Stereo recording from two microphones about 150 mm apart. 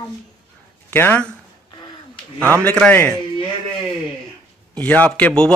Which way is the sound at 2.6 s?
10° left (ahead or behind).